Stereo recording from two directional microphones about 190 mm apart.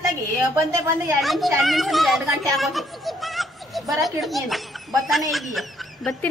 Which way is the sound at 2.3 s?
Centre (ahead or behind).